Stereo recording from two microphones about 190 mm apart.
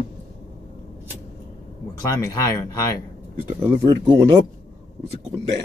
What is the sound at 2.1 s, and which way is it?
Speech, 15° left (ahead or behind).